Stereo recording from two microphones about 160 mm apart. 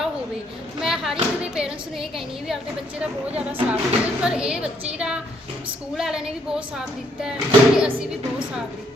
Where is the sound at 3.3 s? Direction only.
35° right (ahead or behind).